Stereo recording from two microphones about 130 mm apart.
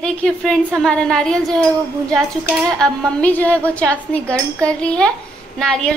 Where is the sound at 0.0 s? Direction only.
5° left (ahead or behind).